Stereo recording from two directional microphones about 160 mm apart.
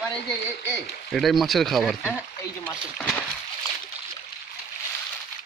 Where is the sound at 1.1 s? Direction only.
Centre (ahead or behind).